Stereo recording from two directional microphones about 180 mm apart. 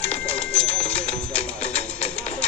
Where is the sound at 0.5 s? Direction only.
35° left (ahead or behind).